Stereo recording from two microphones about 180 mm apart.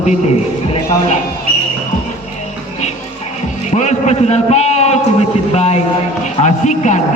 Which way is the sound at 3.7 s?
40° left (ahead or behind).